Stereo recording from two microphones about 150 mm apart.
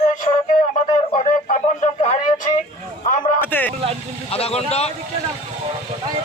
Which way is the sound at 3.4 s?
15° left (ahead or behind).